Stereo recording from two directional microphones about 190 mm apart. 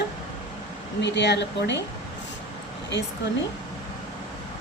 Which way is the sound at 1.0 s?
65° left (ahead or behind).